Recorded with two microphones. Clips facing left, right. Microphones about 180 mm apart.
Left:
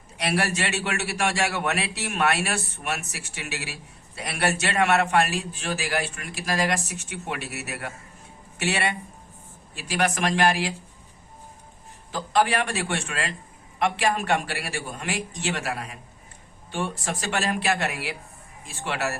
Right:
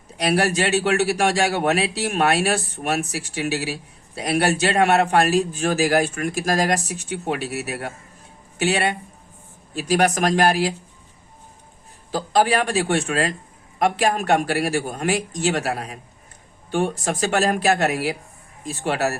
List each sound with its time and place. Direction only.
0.2 s a man's voice: 40° right (ahead or behind)
12.1 s a man's voice: 35° right (ahead or behind)